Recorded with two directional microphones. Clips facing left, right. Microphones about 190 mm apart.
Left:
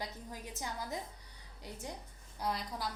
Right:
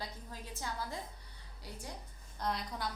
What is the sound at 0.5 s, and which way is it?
Speech, 15° left (ahead or behind).